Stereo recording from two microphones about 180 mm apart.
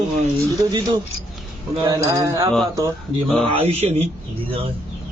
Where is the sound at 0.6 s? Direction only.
20° right (ahead or behind).